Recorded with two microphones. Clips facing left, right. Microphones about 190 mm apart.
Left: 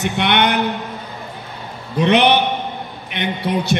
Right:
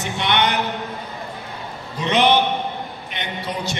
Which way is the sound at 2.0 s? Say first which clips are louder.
Left 3 dB; 65° left (ahead or behind).